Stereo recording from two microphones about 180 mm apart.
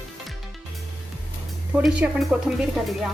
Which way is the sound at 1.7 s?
10° right (ahead or behind).